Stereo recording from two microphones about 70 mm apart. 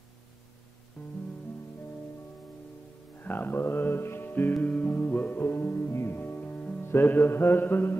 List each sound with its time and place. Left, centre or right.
1.0 s music: left
3.3 s music: left
4.6 s music: centre